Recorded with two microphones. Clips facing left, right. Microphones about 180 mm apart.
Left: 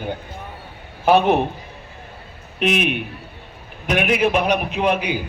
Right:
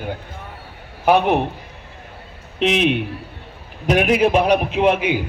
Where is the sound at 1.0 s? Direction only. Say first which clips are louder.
Even; 15° right (ahead or behind).